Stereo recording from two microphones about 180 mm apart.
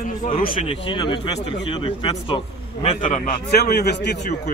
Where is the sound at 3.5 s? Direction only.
60° left (ahead or behind).